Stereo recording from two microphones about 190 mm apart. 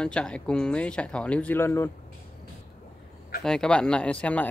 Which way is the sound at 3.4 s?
5° left (ahead or behind).